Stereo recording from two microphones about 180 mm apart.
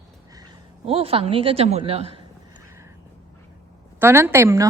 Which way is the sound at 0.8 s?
30° right (ahead or behind).